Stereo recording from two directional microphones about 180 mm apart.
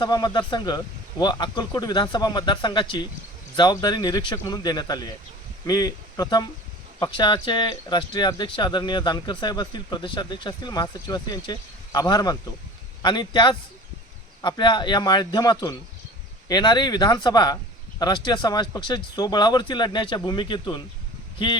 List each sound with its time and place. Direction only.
0.0 s speech: 25° left (ahead or behind)